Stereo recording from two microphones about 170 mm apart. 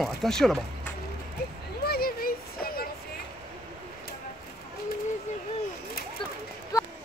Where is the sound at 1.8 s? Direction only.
65° left (ahead or behind).